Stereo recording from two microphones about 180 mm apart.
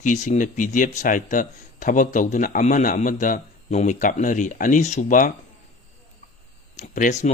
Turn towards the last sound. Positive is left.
turn(degrees=45)  # may be behind; listen again after turning